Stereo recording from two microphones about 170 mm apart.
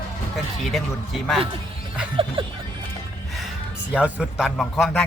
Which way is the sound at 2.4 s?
30° right (ahead or behind).